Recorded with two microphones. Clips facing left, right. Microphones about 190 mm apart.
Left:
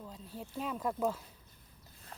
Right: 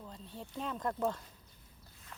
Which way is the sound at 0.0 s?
5° left (ahead or behind).